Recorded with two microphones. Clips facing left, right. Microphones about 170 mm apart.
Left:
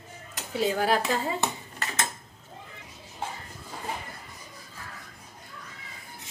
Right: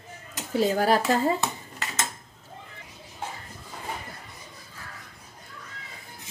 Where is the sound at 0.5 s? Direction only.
40° right (ahead or behind).